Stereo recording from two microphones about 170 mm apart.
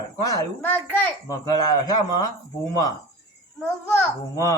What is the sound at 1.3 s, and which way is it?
A child's voice, 25° left (ahead or behind).